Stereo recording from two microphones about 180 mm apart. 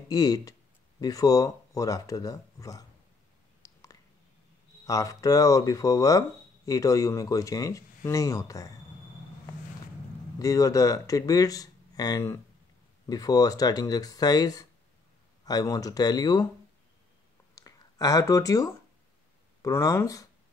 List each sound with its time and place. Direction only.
0.1 s speech: 20° left (ahead or behind)
3.6 s a sound: 20° left (ahead or behind)
4.8 s speech: 20° left (ahead or behind)
10.4 s speech: 20° left (ahead or behind)
17.6 s a sound: 20° left (ahead or behind)
19.6 s speech: 20° left (ahead or behind)